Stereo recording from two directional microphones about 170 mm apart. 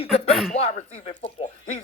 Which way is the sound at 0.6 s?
35° left (ahead or behind).